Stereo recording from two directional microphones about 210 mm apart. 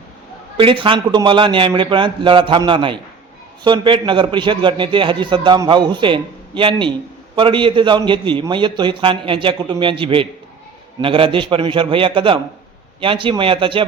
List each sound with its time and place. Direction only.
0.5 s a man's voice: 25° right (ahead or behind)